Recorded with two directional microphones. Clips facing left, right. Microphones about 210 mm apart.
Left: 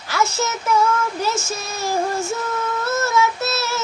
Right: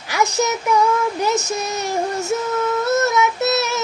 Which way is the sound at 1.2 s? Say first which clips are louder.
Right 4 dB; 20° right (ahead or behind).